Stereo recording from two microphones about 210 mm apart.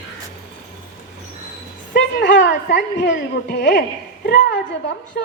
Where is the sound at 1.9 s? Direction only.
60° left (ahead or behind).